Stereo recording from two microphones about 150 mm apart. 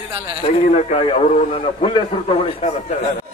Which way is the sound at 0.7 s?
45° left (ahead or behind).